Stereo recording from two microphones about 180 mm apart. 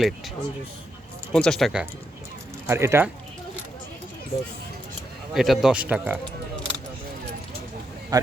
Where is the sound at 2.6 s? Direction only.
15° right (ahead or behind).